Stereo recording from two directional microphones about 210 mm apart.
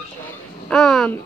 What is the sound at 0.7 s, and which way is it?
Speech, centre (ahead or behind).